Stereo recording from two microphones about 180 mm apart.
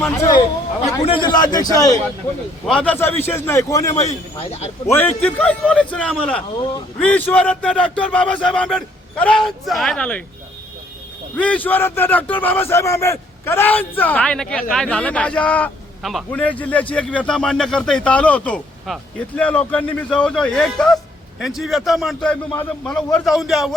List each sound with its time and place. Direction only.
0.0 s a man's voice: 15° left (ahead or behind)
2.6 s a man's voice: 5° left (ahead or behind)
4.0 s a man's voice: 35° left (ahead or behind)
4.9 s a man's voice: 10° left (ahead or behind)
11.3 s a man's voice: 5° left (ahead or behind)